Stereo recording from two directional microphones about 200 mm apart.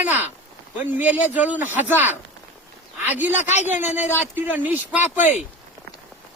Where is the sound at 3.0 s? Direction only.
10° right (ahead or behind).